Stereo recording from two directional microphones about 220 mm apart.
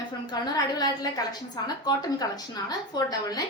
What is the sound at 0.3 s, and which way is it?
A woman's voice, 15° left (ahead or behind).